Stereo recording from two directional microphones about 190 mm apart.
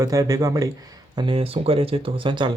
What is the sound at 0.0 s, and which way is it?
Speech, 15° right (ahead or behind).